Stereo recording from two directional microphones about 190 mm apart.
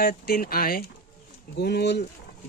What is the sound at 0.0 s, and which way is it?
Speech, 50° left (ahead or behind).